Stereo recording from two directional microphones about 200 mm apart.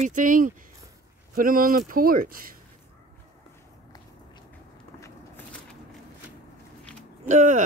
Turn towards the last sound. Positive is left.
turn(degrees=-35)  # may be behind; listen again after turning